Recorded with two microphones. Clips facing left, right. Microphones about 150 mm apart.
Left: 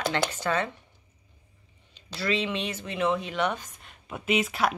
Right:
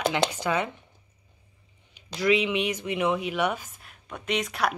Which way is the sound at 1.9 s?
15° right (ahead or behind).